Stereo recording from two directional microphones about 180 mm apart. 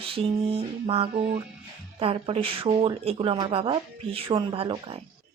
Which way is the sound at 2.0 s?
30° right (ahead or behind).